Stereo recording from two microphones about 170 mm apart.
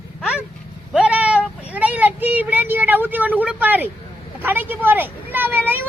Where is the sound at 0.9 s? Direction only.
5° right (ahead or behind).